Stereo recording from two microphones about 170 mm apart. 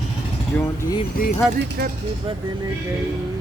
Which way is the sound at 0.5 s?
15° left (ahead or behind).